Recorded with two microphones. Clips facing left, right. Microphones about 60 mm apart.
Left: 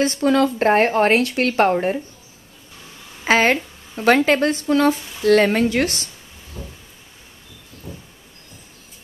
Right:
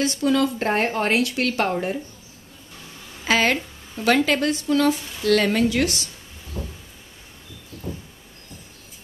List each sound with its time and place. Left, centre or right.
0.0 s speech: left
3.3 s speech: left
6.6 s cupboard open or close: centre
7.9 s a sound: centre